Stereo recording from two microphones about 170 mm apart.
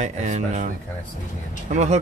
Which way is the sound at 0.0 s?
45° right (ahead or behind).